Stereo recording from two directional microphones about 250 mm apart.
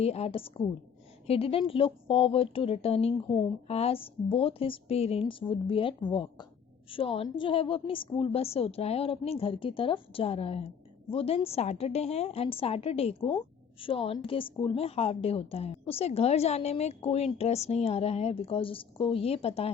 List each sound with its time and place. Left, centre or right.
0.0 s a woman's voice: left